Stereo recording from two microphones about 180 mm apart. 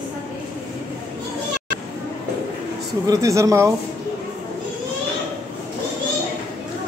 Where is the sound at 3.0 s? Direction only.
20° right (ahead or behind).